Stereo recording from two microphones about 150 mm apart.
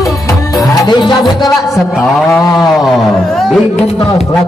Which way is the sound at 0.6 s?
25° left (ahead or behind).